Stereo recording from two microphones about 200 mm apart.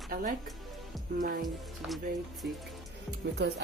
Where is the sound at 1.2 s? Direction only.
45° right (ahead or behind).